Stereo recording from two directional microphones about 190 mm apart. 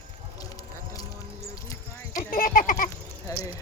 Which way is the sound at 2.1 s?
50° left (ahead or behind).